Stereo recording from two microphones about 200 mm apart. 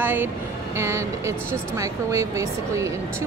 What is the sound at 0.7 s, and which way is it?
Speech, 15° right (ahead or behind).